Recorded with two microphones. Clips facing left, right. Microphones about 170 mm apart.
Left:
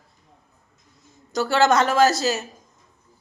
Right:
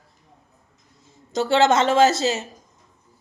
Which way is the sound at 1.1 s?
25° right (ahead or behind).